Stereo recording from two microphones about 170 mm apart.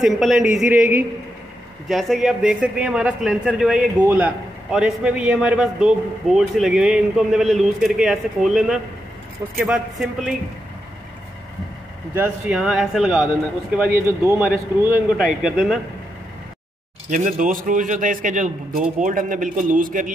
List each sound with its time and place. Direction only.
0.0 s a man's voice: centre (ahead or behind)
12.1 s a man's voice: 10° right (ahead or behind)
13.9 s a man's voice: 15° right (ahead or behind)
17.1 s a man's voice: 50° right (ahead or behind)